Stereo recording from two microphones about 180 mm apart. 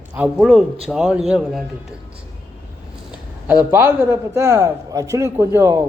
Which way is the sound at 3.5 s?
10° right (ahead or behind).